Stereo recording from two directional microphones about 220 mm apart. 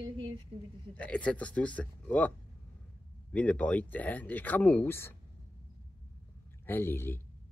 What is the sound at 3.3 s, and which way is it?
Speech, 5° left (ahead or behind).